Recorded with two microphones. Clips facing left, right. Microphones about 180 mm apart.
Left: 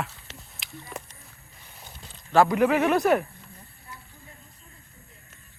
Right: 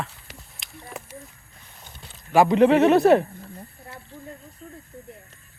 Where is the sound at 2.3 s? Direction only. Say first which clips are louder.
Right 4 dB; 20° right (ahead or behind).